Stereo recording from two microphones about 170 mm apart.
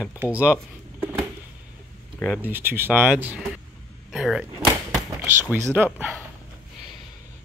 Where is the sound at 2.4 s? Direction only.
10° right (ahead or behind).